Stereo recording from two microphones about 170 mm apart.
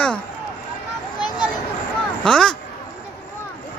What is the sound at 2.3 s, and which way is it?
Speech, 5° left (ahead or behind).